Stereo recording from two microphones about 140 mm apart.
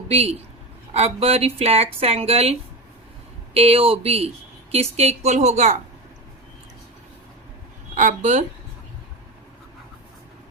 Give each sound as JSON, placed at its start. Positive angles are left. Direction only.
{"t": 0.1, "sound": "speech", "side_deg": -50}
{"t": 7.9, "sound": "speech", "side_deg": -60}